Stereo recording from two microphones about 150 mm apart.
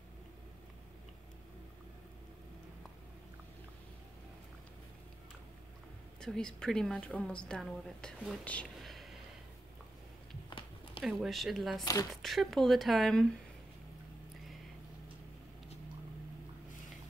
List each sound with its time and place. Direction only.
6.2 s speech: 5° left (ahead or behind)
11.1 s speech: centre (ahead or behind)
11.8 s speech: 25° left (ahead or behind)
12.2 s speech: centre (ahead or behind)